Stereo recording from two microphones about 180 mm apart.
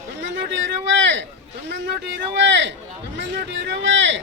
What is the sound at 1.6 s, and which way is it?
Speech, 75° right (ahead or behind).